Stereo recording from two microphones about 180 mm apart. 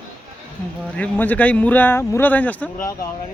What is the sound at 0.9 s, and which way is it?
Speech, 10° left (ahead or behind).